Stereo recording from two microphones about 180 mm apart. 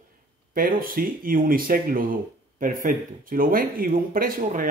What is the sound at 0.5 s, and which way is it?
Speech, 55° right (ahead or behind).